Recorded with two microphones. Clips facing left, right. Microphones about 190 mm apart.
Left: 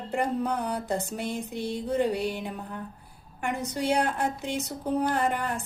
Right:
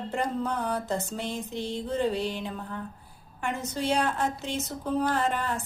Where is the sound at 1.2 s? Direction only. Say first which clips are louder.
Left 1 dB; 60° left (ahead or behind).